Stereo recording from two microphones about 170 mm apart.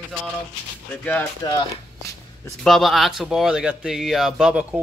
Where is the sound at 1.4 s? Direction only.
20° left (ahead or behind).